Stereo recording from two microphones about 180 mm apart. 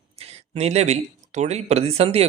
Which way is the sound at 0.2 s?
35° right (ahead or behind).